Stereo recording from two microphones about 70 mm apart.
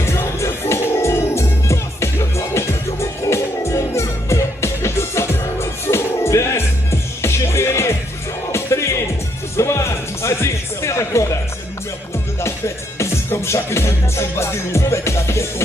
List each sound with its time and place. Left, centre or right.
0.0 s music: left
12.4 s music: left